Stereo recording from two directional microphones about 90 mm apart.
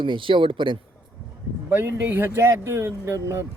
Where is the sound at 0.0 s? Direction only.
70° right (ahead or behind).